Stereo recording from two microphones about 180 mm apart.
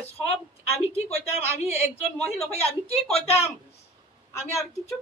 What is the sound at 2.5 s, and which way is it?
Speech, 35° left (ahead or behind).